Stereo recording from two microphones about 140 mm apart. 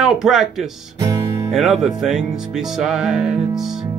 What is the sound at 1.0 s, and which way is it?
Music, 25° right (ahead or behind).